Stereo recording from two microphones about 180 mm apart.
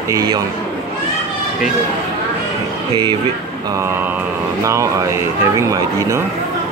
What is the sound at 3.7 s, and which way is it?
Speech, 15° right (ahead or behind).